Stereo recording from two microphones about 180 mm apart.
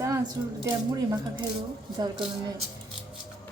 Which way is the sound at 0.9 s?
25° right (ahead or behind).